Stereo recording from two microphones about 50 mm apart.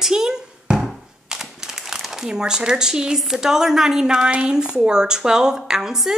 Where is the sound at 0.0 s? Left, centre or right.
Centre.